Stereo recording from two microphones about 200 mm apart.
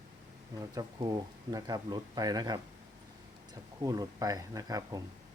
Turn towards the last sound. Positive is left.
turn(degrees=-20)  # may be behind; listen again after turning